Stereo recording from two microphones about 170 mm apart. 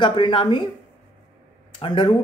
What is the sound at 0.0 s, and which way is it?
Speech, 30° left (ahead or behind).